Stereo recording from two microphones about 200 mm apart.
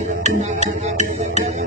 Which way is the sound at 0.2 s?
35° right (ahead or behind).